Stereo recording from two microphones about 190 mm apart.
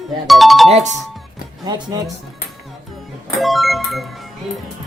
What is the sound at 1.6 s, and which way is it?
Speech, 20° right (ahead or behind).